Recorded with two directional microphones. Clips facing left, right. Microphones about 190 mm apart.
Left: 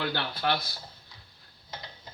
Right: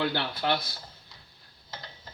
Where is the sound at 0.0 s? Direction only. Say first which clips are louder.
Right 2 dB; 20° right (ahead or behind).